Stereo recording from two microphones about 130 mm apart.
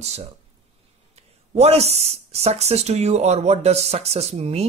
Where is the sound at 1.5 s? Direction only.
55° right (ahead or behind).